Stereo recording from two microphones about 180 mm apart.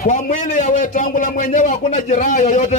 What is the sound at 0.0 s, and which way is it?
A man's voice, 45° left (ahead or behind).